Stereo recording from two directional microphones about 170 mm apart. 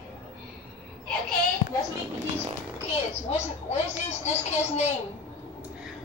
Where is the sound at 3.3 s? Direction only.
40° left (ahead or behind).